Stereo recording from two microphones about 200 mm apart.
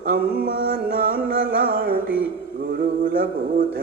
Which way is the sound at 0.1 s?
50° right (ahead or behind).